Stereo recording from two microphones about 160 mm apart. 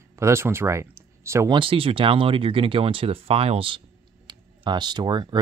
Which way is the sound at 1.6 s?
35° right (ahead or behind).